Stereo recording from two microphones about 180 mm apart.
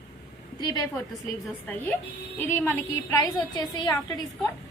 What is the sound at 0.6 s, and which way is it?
Speech, 20° left (ahead or behind).